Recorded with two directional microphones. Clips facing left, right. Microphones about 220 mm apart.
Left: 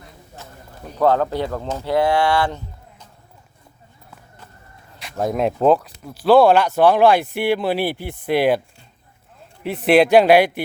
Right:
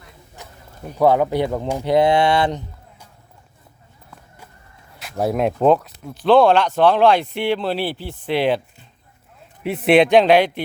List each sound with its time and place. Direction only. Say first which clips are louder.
0.9 s speech: right 2 dB; 15° right (ahead or behind)
5.1 s speech: right 1 dB; 5° right (ahead or behind)
9.6 s speech: even; centre (ahead or behind)